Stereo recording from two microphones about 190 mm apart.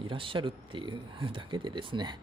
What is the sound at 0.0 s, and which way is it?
Speech, 25° right (ahead or behind).